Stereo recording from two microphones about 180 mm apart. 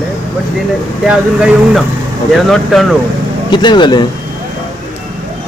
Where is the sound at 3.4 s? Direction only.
25° left (ahead or behind).